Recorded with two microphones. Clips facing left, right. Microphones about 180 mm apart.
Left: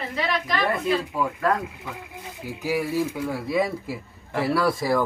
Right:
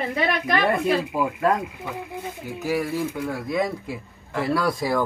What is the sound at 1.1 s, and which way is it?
Speech, 20° right (ahead or behind).